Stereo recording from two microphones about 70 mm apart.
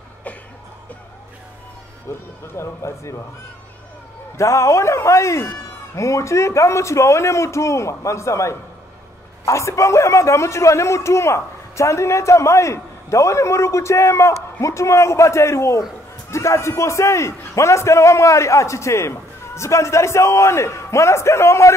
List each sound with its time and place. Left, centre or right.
2.1 s a man's voice: left
4.4 s a man's voice: left